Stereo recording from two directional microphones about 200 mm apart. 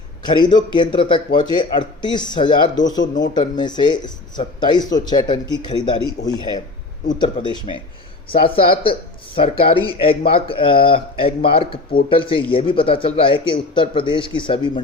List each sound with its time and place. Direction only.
0.3 s a man's voice: 20° left (ahead or behind)